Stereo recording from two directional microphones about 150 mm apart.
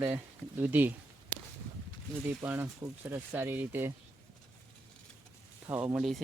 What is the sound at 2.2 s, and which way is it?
Speech, 10° right (ahead or behind).